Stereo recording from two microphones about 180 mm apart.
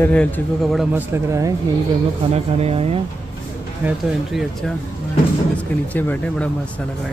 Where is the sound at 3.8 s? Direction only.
Centre (ahead or behind).